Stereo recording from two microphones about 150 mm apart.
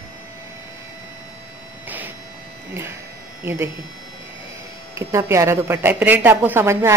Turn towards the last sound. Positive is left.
turn(degrees=-15)  # may be behind; listen again after turning